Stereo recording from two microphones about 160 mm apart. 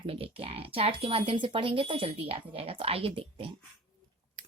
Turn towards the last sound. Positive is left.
turn(degrees=-35)  # may be behind; listen again after turning